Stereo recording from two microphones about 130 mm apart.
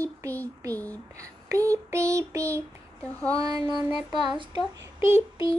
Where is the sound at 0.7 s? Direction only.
10° left (ahead or behind).